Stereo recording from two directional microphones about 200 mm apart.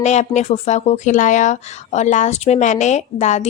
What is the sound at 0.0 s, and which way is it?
Speech, 35° left (ahead or behind).